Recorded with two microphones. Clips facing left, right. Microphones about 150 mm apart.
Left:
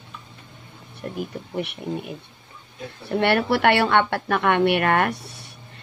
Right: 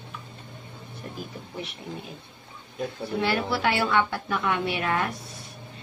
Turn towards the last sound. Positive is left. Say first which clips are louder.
# left 6 dB
turn(degrees=65)  # may be behind; listen again after turning